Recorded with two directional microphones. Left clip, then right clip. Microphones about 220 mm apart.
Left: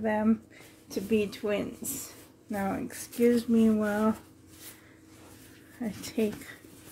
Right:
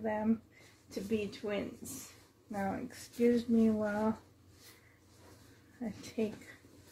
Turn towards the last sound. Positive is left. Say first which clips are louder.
# left 7 dB
turn(degrees=45)  # may be behind; listen again after turning